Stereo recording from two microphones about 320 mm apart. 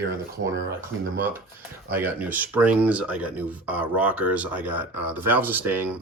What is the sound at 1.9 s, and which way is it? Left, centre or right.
Speech, centre.